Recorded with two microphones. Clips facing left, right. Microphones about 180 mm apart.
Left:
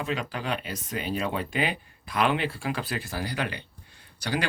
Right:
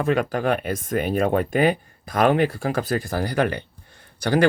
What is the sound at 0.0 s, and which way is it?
Speech, 55° right (ahead or behind).